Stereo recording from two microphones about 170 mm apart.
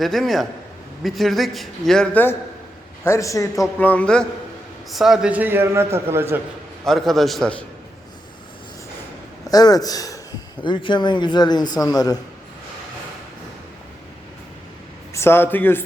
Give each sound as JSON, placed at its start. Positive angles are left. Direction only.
{"t": 0.0, "sound": "a man's voice", "side_deg": 0}
{"t": 6.8, "sound": "a man's voice", "side_deg": 0}
{"t": 9.5, "sound": "a man's voice", "side_deg": 20}
{"t": 15.1, "sound": "speech", "side_deg": 15}